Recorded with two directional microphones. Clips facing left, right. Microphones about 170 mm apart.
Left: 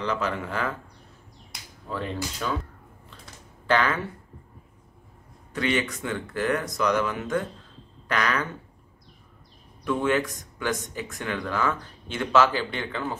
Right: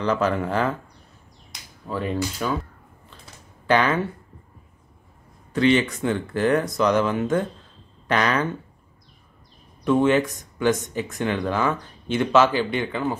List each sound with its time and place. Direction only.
0.0 s speech: 40° right (ahead or behind)
1.9 s speech: 10° right (ahead or behind)
3.6 s speech: 20° right (ahead or behind)
5.5 s speech: 30° right (ahead or behind)
9.8 s speech: 25° right (ahead or behind)